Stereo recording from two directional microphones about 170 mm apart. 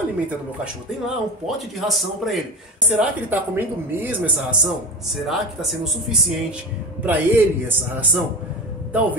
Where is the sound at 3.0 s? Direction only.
10° right (ahead or behind).